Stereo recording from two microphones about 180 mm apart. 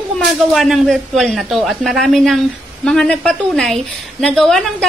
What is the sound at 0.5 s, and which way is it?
A woman's voice, centre (ahead or behind).